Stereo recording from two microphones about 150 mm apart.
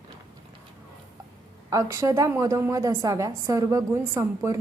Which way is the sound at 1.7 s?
20° right (ahead or behind).